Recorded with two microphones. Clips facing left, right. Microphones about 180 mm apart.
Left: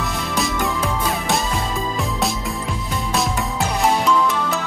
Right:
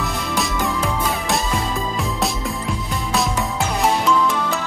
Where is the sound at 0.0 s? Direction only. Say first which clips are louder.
Even; centre (ahead or behind).